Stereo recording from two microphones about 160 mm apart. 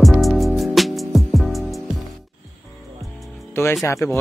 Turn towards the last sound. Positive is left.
turn(degrees=15)  # may be behind; listen again after turning